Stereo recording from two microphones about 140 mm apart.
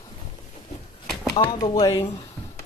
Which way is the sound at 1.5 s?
30° left (ahead or behind).